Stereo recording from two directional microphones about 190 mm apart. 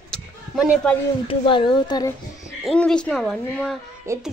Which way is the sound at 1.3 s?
25° left (ahead or behind).